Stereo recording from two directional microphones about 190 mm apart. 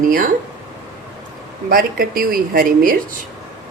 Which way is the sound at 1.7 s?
50° right (ahead or behind).